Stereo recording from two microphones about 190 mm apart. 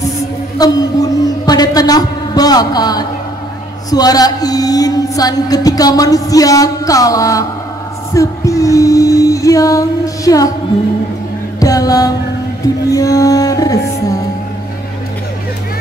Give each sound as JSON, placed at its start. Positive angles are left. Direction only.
{"t": 0.6, "sound": "music", "side_deg": 20}
{"t": 11.6, "sound": "music", "side_deg": 20}